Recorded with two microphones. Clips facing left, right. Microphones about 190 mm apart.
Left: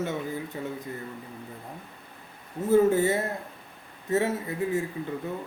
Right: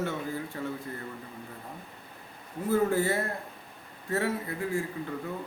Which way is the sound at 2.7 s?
20° left (ahead or behind).